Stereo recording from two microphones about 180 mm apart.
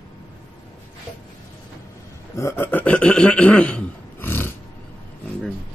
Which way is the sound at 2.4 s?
15° left (ahead or behind).